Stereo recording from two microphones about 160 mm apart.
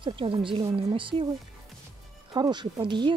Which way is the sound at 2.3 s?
30° right (ahead or behind).